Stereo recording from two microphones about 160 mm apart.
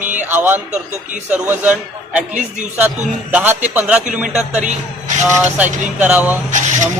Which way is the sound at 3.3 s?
10° right (ahead or behind).